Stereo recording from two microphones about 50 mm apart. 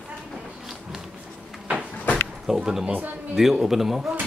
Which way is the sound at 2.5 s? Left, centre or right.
Centre.